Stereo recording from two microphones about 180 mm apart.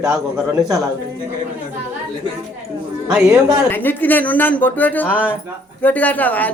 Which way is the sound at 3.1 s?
5° right (ahead or behind).